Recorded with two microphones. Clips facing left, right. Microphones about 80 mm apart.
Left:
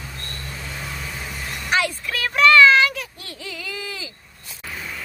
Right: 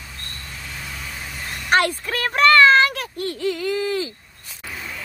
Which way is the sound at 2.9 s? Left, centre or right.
Right.